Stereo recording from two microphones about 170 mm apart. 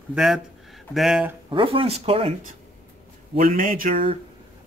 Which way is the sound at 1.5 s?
30° right (ahead or behind).